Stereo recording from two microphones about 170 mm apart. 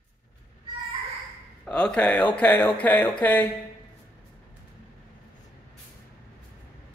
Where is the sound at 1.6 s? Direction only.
5° left (ahead or behind).